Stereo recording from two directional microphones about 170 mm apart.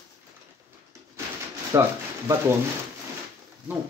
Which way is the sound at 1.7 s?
20° right (ahead or behind).